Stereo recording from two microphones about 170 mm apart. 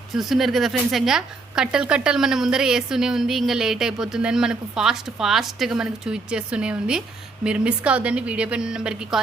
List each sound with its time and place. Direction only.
0.2 s a woman's voice: centre (ahead or behind)